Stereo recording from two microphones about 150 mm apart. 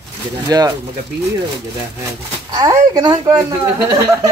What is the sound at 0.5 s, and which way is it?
Speech, 25° right (ahead or behind).